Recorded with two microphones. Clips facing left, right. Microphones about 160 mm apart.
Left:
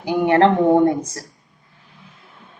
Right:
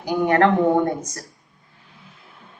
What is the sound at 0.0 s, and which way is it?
Speech, 25° left (ahead or behind).